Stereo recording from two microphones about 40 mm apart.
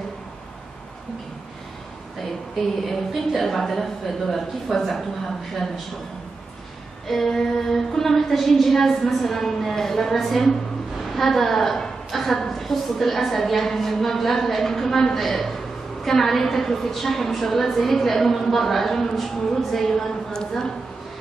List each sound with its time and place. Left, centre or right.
3.1 s a woman's voice: centre
7.1 s a woman's voice: centre
20.3 s a woman's voice: centre